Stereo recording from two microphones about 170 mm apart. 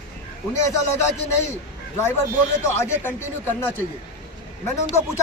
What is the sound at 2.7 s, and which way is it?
Speech, 15° left (ahead or behind).